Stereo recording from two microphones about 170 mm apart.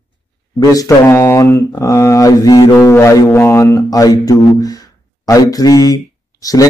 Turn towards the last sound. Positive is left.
turn(degrees=20)  # may be behind; listen again after turning